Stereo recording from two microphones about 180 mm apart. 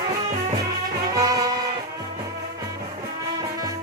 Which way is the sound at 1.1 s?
20° right (ahead or behind).